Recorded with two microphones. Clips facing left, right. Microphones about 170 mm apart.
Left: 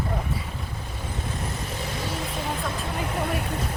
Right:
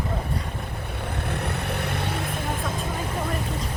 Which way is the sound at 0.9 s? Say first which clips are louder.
Right 3 dB; 65° right (ahead or behind).